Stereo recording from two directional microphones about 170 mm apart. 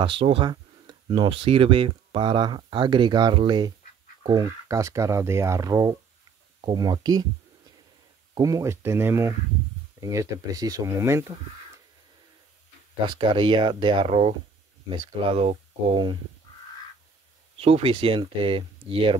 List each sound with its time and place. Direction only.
0.0 s speech: 30° right (ahead or behind)
8.4 s speech: 20° right (ahead or behind)
13.2 s speech: 30° right (ahead or behind)
17.6 s speech: 35° right (ahead or behind)